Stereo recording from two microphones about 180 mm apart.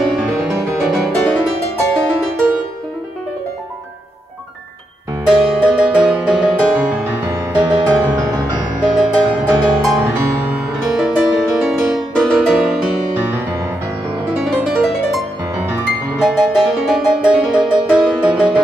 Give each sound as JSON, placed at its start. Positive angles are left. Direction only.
{"t": 0.0, "sound": "music", "side_deg": 0}
{"t": 5.2, "sound": "music", "side_deg": -5}
{"t": 7.5, "sound": "music", "side_deg": -20}
{"t": 8.8, "sound": "music", "side_deg": 0}
{"t": 14.4, "sound": "music", "side_deg": -5}